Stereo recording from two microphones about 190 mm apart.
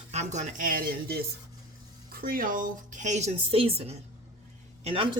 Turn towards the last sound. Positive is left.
turn(degrees=-30)  # may be behind; listen again after turning